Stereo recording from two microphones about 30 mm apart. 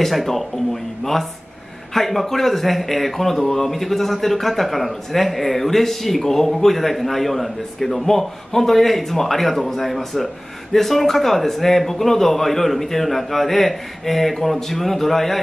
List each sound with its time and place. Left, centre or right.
0.0 s speech: centre
2.0 s a man's voice: centre